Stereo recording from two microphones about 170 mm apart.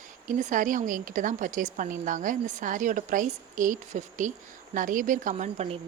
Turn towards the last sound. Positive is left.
turn(degrees=-35)  # may be behind; listen again after turning